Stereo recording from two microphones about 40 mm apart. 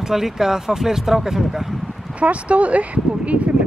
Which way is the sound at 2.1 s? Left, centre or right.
Right.